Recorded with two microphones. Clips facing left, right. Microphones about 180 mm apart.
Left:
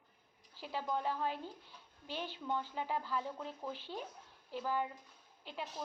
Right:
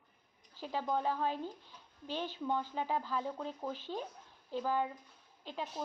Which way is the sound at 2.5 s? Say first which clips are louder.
Right 2 dB; 15° right (ahead or behind).